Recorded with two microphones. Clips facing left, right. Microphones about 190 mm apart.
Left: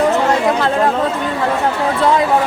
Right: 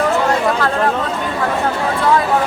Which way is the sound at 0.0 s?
20° left (ahead or behind).